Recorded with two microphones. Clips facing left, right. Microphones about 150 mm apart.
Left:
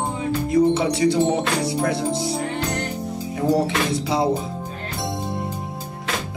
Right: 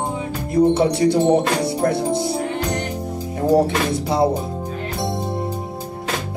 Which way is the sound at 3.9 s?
55° right (ahead or behind).